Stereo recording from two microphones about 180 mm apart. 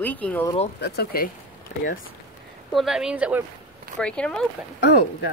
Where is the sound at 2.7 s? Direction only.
Centre (ahead or behind).